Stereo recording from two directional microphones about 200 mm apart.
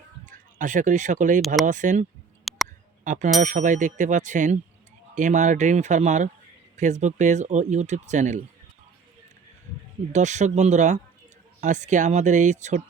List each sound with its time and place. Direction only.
0.3 s speech: 40° right (ahead or behind)
2.4 s a sound: centre (ahead or behind)
3.0 s speech: 40° right (ahead or behind)
10.1 s speech: 35° right (ahead or behind)